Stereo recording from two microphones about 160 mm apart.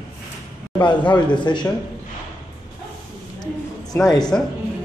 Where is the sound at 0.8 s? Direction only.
30° left (ahead or behind).